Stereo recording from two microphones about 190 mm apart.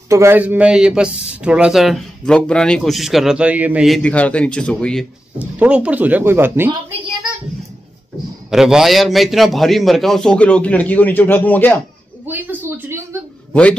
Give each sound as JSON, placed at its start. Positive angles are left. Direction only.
{"t": 0.1, "sound": "speech", "side_deg": -15}
{"t": 5.6, "sound": "speech", "side_deg": -5}
{"t": 8.5, "sound": "speech", "side_deg": 0}
{"t": 12.3, "sound": "a sound", "side_deg": -10}
{"t": 13.5, "sound": "speech", "side_deg": 5}